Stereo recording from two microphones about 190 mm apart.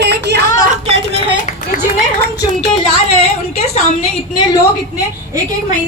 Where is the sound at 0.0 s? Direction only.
60° right (ahead or behind).